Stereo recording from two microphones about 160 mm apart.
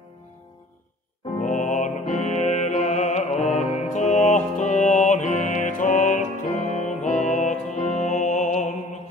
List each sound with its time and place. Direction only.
1.4 s music: 50° left (ahead or behind)